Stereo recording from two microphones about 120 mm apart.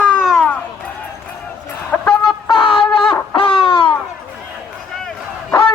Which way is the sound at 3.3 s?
45° left (ahead or behind).